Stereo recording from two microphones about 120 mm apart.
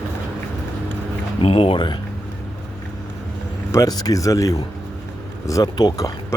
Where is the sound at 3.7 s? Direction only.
30° left (ahead or behind).